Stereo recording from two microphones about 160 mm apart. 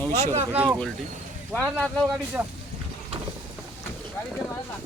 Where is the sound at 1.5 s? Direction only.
5° left (ahead or behind).